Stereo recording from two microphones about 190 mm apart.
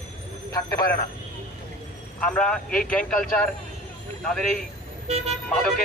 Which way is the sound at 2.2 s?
5° left (ahead or behind).